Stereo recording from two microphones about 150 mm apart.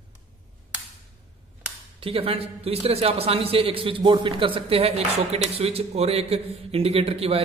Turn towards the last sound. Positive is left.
turn(degrees=-40)  # may be behind; listen again after turning